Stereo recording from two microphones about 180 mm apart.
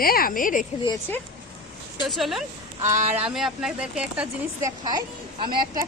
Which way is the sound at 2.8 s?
40° right (ahead or behind).